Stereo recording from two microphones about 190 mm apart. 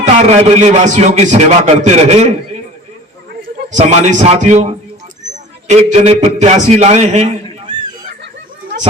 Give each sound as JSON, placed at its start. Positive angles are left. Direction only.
{"t": 0.2, "sound": "a man's voice", "side_deg": -35}
{"t": 3.7, "sound": "a man's voice", "side_deg": -40}